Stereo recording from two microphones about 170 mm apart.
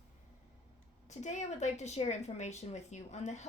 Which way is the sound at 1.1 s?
45° left (ahead or behind).